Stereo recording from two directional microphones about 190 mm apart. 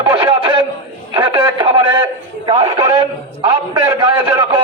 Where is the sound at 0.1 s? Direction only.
25° right (ahead or behind).